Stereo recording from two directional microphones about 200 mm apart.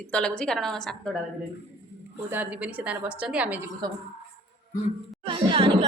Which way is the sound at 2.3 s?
10° right (ahead or behind).